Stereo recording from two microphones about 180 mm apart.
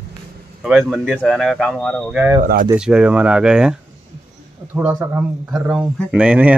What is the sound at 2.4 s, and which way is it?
Speech, 50° right (ahead or behind).